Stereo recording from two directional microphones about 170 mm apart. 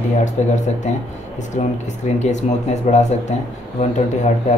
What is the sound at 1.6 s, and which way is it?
Speech, 45° left (ahead or behind).